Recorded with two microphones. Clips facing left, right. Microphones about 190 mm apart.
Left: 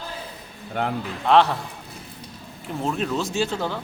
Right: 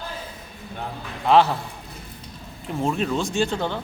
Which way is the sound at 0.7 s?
80° left.